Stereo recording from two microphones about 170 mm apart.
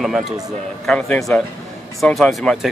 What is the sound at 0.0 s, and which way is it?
Speech, centre (ahead or behind).